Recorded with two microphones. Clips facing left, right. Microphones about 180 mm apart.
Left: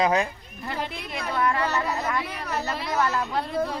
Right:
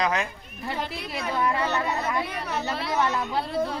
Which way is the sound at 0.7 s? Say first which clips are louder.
Even; 5° right (ahead or behind).